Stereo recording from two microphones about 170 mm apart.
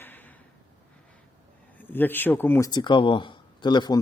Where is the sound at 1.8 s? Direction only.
10° left (ahead or behind).